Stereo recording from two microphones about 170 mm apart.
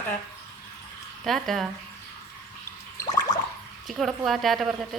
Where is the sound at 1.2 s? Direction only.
Centre (ahead or behind).